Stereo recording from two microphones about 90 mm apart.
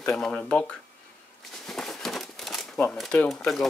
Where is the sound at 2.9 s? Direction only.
Centre (ahead or behind).